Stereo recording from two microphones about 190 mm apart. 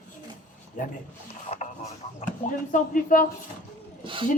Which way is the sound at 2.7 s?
45° left (ahead or behind).